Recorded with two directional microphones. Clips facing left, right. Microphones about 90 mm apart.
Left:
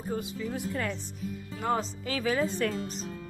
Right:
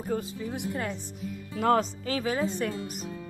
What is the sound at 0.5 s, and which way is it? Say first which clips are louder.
Speech: even; 25° right (ahead or behind).